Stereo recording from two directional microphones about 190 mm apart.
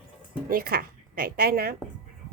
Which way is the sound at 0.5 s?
50° right (ahead or behind).